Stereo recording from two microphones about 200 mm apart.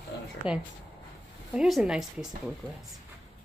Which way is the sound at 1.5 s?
5° right (ahead or behind).